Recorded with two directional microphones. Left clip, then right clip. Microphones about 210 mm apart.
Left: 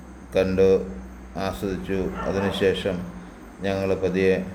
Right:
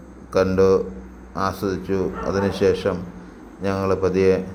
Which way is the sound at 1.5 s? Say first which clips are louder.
Right 4 dB; 10° left (ahead or behind).